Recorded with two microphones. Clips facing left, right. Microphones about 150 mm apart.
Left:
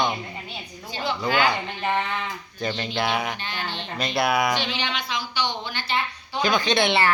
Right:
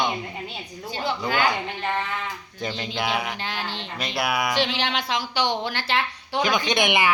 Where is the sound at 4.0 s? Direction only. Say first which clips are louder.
Left 3 dB; 10° right (ahead or behind).